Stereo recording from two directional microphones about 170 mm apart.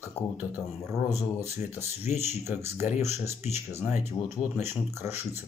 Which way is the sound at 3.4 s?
40° left (ahead or behind).